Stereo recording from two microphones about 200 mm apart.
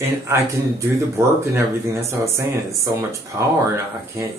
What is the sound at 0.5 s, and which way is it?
Speech, 15° right (ahead or behind).